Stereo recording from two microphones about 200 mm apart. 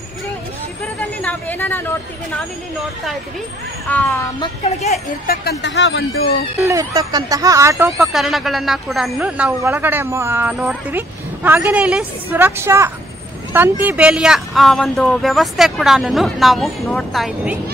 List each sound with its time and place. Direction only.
1.2 s speech: 10° left (ahead or behind)
3.9 s speech: 10° left (ahead or behind)
4.4 s speech: 35° left (ahead or behind)
5.2 s speech: 50° left (ahead or behind)
6.6 s speech: 15° right (ahead or behind)
8.0 s speech: centre (ahead or behind)